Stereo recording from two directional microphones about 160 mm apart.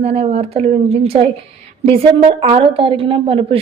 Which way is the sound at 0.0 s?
40° right (ahead or behind).